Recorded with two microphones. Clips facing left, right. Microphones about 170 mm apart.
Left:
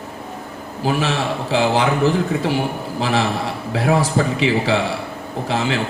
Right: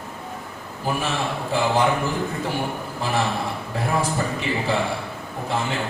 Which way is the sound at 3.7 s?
90° left.